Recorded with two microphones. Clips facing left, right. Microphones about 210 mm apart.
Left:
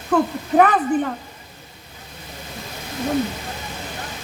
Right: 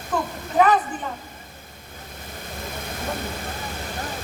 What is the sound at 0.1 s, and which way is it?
Speech, 60° left (ahead or behind).